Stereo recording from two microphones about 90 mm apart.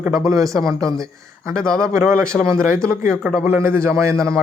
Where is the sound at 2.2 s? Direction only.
10° left (ahead or behind).